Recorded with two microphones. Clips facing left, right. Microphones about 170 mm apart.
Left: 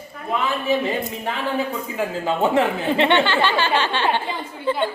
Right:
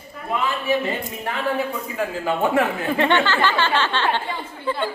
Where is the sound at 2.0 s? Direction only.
20° left (ahead or behind).